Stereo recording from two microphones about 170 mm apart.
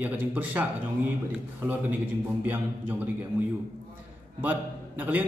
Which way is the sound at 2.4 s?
10° right (ahead or behind).